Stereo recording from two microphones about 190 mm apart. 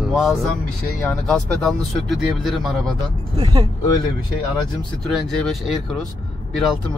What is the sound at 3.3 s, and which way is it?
Speech, 25° right (ahead or behind).